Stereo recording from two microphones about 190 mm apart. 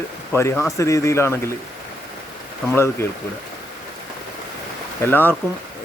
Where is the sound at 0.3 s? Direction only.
15° left (ahead or behind).